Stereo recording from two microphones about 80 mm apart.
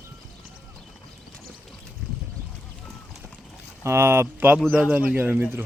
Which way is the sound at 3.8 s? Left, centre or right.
Right.